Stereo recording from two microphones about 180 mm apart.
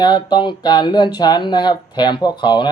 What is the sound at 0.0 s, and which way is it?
Speech, 25° left (ahead or behind).